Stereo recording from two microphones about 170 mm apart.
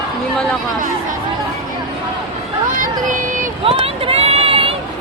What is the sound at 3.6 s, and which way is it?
Run, 35° right (ahead or behind).